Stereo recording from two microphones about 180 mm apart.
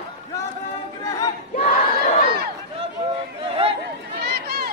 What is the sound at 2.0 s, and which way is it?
Crowd, 50° left (ahead or behind).